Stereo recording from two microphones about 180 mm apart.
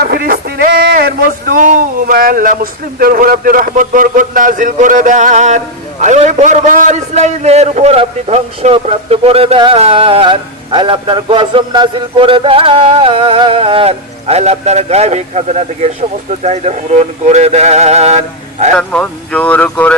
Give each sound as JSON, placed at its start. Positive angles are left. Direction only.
{"t": 0.0, "sound": "a man's voice", "side_deg": -55}
{"t": 18.8, "sound": "speech", "side_deg": 5}